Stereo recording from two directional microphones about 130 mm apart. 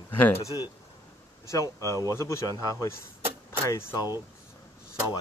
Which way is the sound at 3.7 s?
30° left (ahead or behind).